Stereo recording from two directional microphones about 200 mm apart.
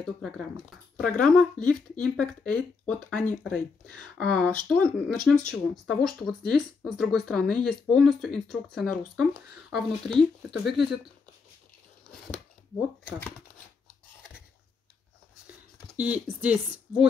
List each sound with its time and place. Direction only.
0.9 s speech: 5° left (ahead or behind)
16.0 s speech: 5° right (ahead or behind)